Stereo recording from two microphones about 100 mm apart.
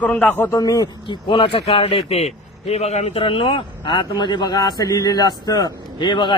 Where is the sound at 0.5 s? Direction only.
40° left (ahead or behind); by 1.6 s 55° left (ahead or behind).